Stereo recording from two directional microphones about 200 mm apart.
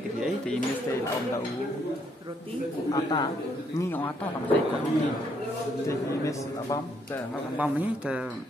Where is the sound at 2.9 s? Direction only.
20° left (ahead or behind).